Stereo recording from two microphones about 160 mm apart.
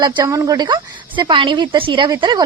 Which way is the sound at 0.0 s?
25° right (ahead or behind).